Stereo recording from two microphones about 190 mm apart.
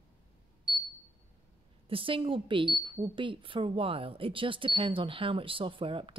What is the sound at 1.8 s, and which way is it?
A woman's voice, 30° right (ahead or behind).